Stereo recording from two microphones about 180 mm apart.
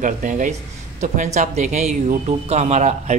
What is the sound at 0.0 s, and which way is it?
Speech, 45° right (ahead or behind).